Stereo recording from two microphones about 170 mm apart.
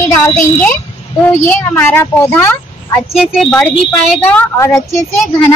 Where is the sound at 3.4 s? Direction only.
Centre (ahead or behind).